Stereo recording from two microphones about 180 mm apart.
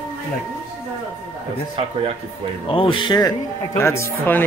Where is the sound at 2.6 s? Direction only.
30° left (ahead or behind); by 4.4 s 15° left (ahead or behind).